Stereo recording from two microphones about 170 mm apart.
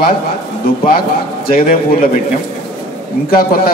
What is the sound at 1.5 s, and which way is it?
Speech, 50° left (ahead or behind).